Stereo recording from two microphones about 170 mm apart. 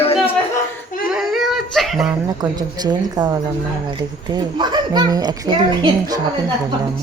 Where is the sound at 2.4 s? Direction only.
25° right (ahead or behind).